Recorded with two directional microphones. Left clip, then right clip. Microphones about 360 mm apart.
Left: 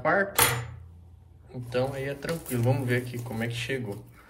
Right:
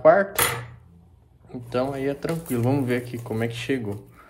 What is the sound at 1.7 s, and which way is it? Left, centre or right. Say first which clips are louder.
Speech: right 4 dB; centre.